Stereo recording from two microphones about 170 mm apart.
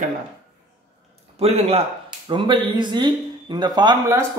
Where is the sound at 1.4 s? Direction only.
35° right (ahead or behind).